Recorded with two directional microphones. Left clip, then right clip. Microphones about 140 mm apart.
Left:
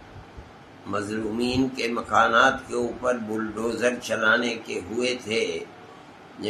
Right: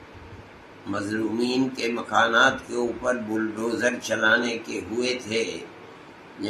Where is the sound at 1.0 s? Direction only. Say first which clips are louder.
Right 1 dB; 40° left (ahead or behind).